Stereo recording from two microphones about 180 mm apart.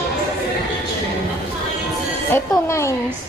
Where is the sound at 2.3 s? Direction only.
15° left (ahead or behind).